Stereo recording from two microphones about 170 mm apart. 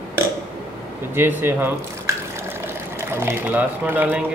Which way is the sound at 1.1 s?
15° right (ahead or behind).